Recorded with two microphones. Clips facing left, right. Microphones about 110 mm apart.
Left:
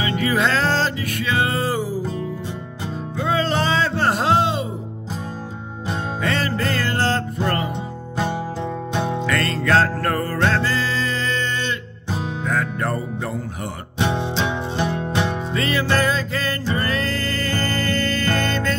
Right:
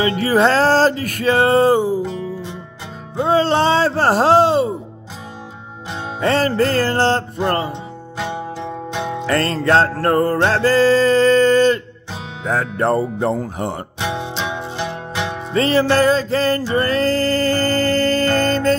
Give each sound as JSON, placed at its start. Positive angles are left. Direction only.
{"t": 0.0, "sound": "music", "side_deg": -35}
{"t": 3.2, "sound": "music", "side_deg": -30}
{"t": 6.2, "sound": "music", "side_deg": -35}
{"t": 9.2, "sound": "music", "side_deg": -35}
{"t": 10.6, "sound": "music", "side_deg": -40}
{"t": 14.1, "sound": "music", "side_deg": -15}
{"t": 15.5, "sound": "music", "side_deg": -35}